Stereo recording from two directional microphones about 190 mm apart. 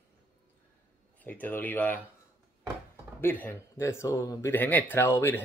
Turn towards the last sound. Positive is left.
turn(degrees=10)  # may be behind; listen again after turning